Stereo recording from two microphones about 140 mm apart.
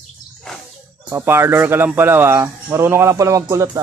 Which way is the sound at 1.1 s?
15° right (ahead or behind).